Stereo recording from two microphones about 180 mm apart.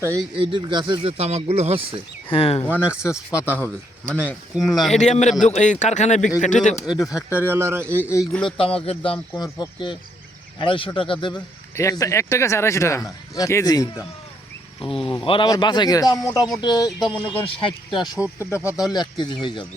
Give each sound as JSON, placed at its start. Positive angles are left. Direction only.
{"t": 0.0, "sound": "a man's voice", "side_deg": -15}
{"t": 2.3, "sound": "speech", "side_deg": 35}
{"t": 2.8, "sound": "speech", "side_deg": -5}
{"t": 3.3, "sound": "a man's voice", "side_deg": 10}
{"t": 4.7, "sound": "speech", "side_deg": 0}
{"t": 4.9, "sound": "speech", "side_deg": 40}
{"t": 6.8, "sound": "speech", "side_deg": 25}
{"t": 7.3, "sound": "a man's voice", "side_deg": -10}
{"t": 8.2, "sound": "speech", "side_deg": 5}
{"t": 8.5, "sound": "a man's voice", "side_deg": 30}
{"t": 14.8, "sound": "speech", "side_deg": 30}
{"t": 18.2, "sound": "a man's voice", "side_deg": -10}
{"t": 18.5, "sound": "a man's voice", "side_deg": 15}